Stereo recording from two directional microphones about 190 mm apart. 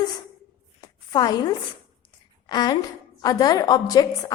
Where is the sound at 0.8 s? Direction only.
20° left (ahead or behind).